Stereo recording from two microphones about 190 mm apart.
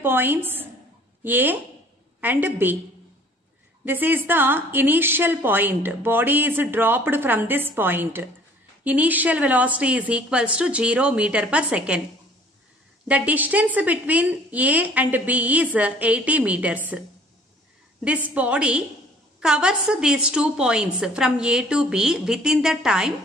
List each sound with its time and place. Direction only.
0.0 s a woman's voice: 10° right (ahead or behind)
3.8 s a woman's voice: 10° right (ahead or behind)
13.1 s a woman's voice: 10° right (ahead or behind)
18.0 s a woman's voice: 5° right (ahead or behind)